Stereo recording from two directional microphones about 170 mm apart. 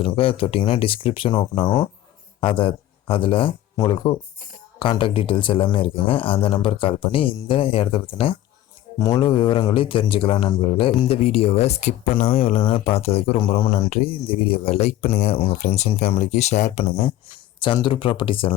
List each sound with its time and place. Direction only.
0.0 s a man's voice: 35° left (ahead or behind)